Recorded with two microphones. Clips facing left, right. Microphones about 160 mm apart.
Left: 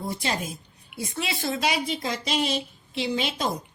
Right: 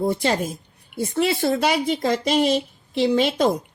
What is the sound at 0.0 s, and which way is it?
A woman's voice, 55° right (ahead or behind).